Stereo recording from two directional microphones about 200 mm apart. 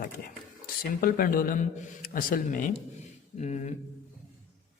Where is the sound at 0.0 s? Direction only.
45° left (ahead or behind).